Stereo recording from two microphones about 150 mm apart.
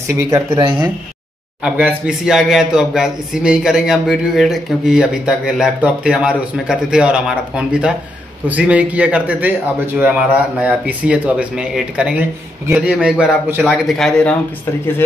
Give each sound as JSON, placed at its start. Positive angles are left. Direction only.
{"t": 0.2, "sound": "speech", "side_deg": -15}
{"t": 0.6, "sound": "speech", "side_deg": -30}
{"t": 1.6, "sound": "speech", "side_deg": -10}
{"t": 10.6, "sound": "speech", "side_deg": -10}
{"t": 13.8, "sound": "speech", "side_deg": 0}